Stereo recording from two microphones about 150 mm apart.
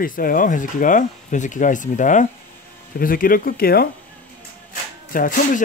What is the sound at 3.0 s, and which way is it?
Speech, 70° left (ahead or behind).